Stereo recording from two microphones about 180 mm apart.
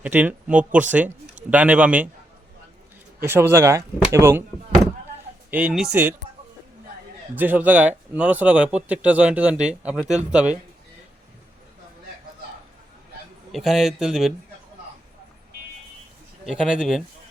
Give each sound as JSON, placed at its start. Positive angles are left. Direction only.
{"t": 0.0, "sound": "speech", "side_deg": -10}
{"t": 3.2, "sound": "speech", "side_deg": -10}
{"t": 7.3, "sound": "speech", "side_deg": -10}
{"t": 13.5, "sound": "a man's voice", "side_deg": 0}
{"t": 16.5, "sound": "a man's voice", "side_deg": -5}